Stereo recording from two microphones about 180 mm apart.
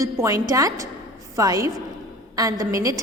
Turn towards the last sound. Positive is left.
turn(degrees=-20)  # may be behind; listen again after turning